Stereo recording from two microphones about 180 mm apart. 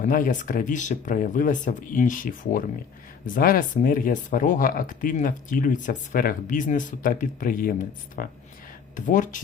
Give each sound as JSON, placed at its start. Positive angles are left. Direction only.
{"t": 0.0, "sound": "speech", "side_deg": 45}